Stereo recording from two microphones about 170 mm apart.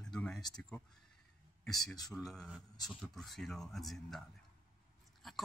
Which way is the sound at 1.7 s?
20° left (ahead or behind).